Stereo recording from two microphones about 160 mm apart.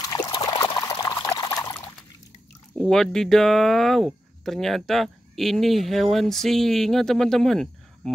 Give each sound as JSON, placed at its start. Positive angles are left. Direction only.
{"t": 0.0, "sound": "pour", "side_deg": 25}
{"t": 2.8, "sound": "speech", "side_deg": 5}